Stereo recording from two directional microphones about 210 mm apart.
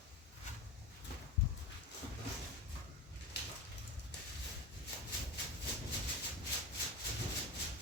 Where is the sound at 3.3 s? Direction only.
55° left (ahead or behind).